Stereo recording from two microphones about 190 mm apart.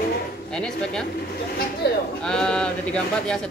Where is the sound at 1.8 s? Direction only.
60° left (ahead or behind).